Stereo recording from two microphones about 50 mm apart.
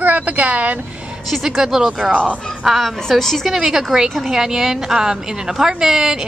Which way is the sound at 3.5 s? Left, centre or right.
Centre.